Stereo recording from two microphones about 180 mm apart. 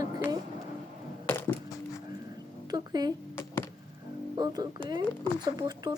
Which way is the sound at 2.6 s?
20° right (ahead or behind).